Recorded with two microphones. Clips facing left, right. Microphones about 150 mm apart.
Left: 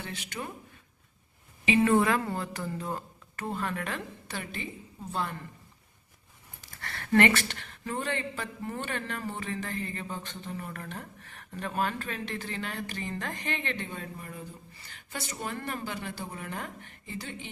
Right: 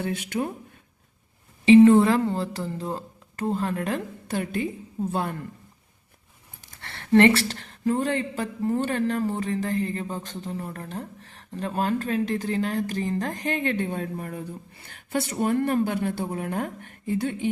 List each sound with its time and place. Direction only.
0.0 s speech: 55° right (ahead or behind)
1.8 s speech: 30° right (ahead or behind); by 5.4 s 50° right (ahead or behind)
6.8 s speech: 25° right (ahead or behind); by 17.5 s 55° right (ahead or behind)